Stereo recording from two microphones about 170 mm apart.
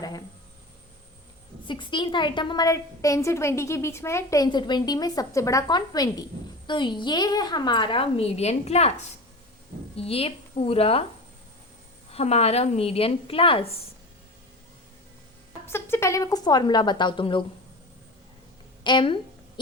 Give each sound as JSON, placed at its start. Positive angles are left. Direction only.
{"t": 0.0, "sound": "a sound", "side_deg": 25}
{"t": 1.6, "sound": "a woman's voice", "side_deg": 30}
{"t": 12.1, "sound": "a woman's voice", "side_deg": 40}
{"t": 15.6, "sound": "a woman's voice", "side_deg": 15}
{"t": 18.8, "sound": "a woman's voice", "side_deg": 30}